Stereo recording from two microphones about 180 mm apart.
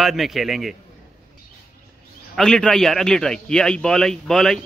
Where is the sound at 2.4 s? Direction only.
5° left (ahead or behind).